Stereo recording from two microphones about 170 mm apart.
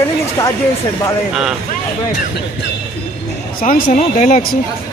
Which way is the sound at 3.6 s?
50° left (ahead or behind).